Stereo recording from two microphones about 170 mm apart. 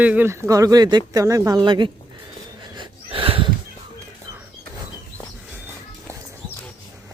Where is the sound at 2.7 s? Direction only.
35° right (ahead or behind).